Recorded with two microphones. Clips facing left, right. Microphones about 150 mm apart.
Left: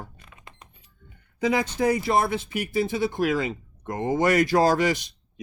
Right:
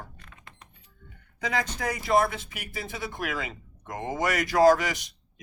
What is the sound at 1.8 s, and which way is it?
Speech, 30° left (ahead or behind).